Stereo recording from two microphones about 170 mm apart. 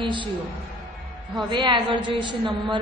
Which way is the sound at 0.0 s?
30° right (ahead or behind).